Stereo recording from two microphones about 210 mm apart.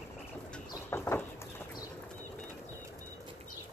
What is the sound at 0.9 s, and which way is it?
Bird, 10° left (ahead or behind).